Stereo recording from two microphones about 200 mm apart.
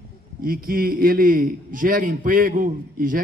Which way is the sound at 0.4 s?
45° right (ahead or behind).